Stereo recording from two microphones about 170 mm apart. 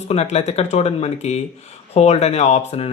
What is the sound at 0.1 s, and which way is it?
Speech, 40° left (ahead or behind).